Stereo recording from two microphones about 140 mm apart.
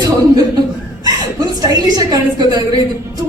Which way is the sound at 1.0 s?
25° right (ahead or behind).